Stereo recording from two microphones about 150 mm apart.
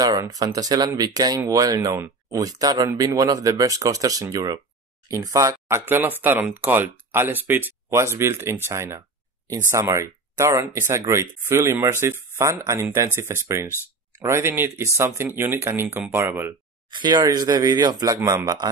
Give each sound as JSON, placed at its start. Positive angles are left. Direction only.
{"t": 0.0, "sound": "speech", "side_deg": -25}
{"t": 16.9, "sound": "speech", "side_deg": -30}